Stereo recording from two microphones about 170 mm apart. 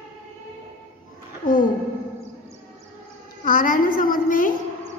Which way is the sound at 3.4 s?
50° left (ahead or behind).